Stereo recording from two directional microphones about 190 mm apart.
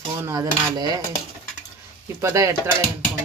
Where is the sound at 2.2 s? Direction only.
15° right (ahead or behind).